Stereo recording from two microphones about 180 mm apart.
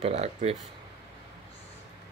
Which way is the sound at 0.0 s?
40° right (ahead or behind).